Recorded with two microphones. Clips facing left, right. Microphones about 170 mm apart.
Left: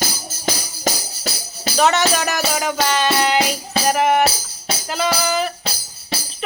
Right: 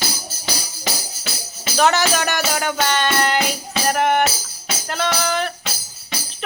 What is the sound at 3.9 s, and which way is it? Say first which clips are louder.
Speech: left 1 dB; 5° left (ahead or behind).